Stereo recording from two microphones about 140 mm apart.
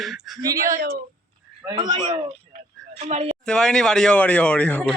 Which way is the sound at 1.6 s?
35° right (ahead or behind).